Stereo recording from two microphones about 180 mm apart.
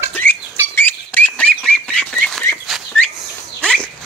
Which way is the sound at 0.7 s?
10° left (ahead or behind).